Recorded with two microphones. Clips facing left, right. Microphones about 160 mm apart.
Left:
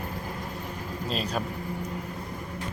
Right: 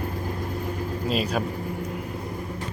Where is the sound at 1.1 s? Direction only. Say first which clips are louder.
Right 4 dB; 5° right (ahead or behind).